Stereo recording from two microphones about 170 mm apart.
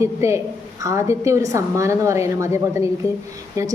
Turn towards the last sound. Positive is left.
turn(degrees=-20)  # may be behind; listen again after turning